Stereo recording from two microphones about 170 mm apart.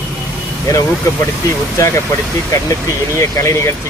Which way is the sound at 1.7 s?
15° left (ahead or behind).